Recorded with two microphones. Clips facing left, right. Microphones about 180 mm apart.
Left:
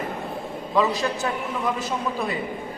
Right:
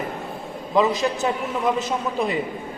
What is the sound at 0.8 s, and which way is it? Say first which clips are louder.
A man's voice: right 3 dB; 20° right (ahead or behind).